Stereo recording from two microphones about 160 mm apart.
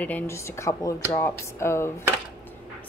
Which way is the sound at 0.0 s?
15° left (ahead or behind).